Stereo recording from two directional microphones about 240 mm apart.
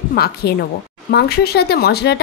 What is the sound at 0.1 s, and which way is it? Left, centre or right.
A woman's voice, left.